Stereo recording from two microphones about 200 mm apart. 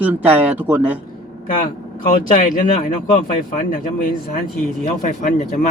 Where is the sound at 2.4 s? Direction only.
45° left (ahead or behind).